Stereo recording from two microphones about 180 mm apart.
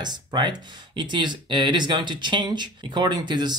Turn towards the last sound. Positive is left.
turn(degrees=-25)  # may be behind; listen again after turning